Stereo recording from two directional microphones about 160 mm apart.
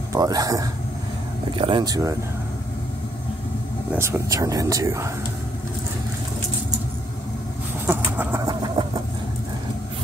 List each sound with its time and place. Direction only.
0.1 s speech: 20° right (ahead or behind)
3.9 s speech: 15° right (ahead or behind)
7.8 s chicken: 15° right (ahead or behind)